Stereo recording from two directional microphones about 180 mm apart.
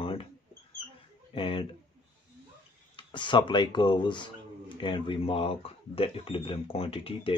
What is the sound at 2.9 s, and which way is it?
Speech, 25° left (ahead or behind).